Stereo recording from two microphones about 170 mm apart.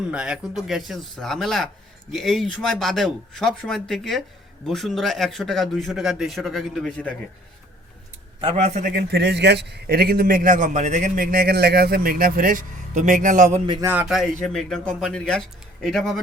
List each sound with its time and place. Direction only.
0.1 s speech: 5° right (ahead or behind)
8.5 s a man's voice: 45° right (ahead or behind)
9.0 s a man's voice: 80° right; by 13.6 s 45° right (ahead or behind)
13.8 s speech: 10° right (ahead or behind)